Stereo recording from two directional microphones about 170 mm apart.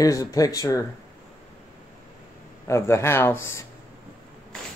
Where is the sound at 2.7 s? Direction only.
15° left (ahead or behind).